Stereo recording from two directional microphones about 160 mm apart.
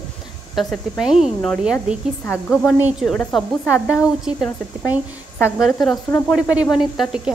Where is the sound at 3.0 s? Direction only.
5° left (ahead or behind).